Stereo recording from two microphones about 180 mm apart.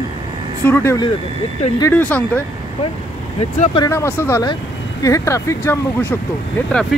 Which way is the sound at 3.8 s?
15° left (ahead or behind).